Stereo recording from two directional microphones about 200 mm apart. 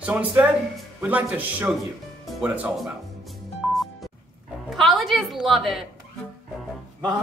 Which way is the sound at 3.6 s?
Centre (ahead or behind).